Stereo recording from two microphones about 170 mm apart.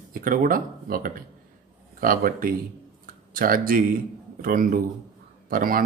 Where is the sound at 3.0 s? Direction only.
55° right (ahead or behind).